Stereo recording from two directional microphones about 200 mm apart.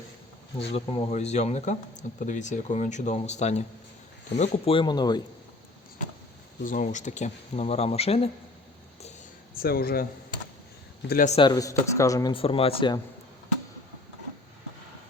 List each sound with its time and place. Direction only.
0.7 s speech: 30° left (ahead or behind)
6.7 s speech: 40° left (ahead or behind)
9.6 s speech: 50° left (ahead or behind)
11.1 s speech: 40° left (ahead or behind)
11.3 s speech: 20° left (ahead or behind)